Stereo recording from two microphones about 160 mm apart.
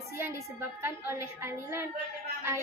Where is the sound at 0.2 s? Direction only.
15° right (ahead or behind).